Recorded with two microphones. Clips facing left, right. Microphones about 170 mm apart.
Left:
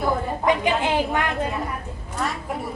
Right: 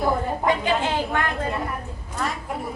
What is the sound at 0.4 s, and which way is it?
Speech, 15° left (ahead or behind).